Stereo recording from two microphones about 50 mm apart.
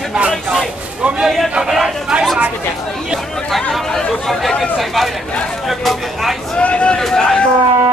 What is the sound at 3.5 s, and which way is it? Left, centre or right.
Chatter, centre.